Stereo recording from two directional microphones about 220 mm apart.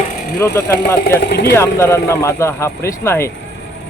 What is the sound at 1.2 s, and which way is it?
Speech, 45° left (ahead or behind).